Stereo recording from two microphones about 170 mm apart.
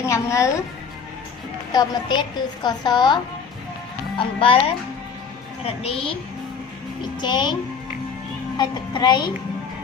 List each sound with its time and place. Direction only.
0.0 s a woman's voice: 20° left (ahead or behind)
1.7 s a woman's voice: 25° left (ahead or behind)
4.2 s speech: 30° left (ahead or behind)
8.5 s a woman's voice: 25° left (ahead or behind)